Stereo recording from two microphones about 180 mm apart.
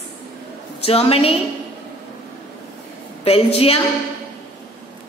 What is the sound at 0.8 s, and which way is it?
Speech, 35° left (ahead or behind).